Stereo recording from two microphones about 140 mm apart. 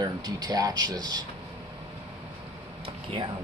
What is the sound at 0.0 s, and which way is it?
Speech, 30° right (ahead or behind).